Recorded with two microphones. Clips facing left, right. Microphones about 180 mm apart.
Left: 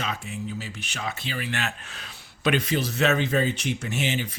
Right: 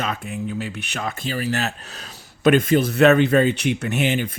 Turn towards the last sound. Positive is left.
turn(degrees=-55)  # may be behind; listen again after turning